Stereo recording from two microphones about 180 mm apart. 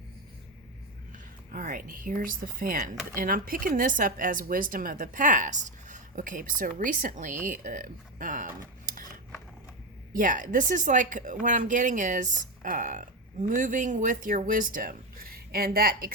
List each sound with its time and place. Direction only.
1.5 s speech: 50° right (ahead or behind)
10.1 s speech: 45° right (ahead or behind)